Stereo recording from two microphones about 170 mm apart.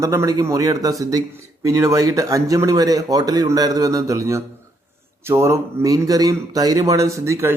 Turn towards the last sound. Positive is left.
turn(degrees=-15)  # may be behind; listen again after turning